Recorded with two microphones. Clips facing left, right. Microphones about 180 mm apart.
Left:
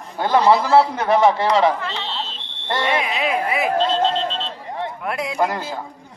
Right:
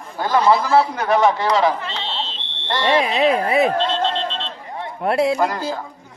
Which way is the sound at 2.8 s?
30° right (ahead or behind).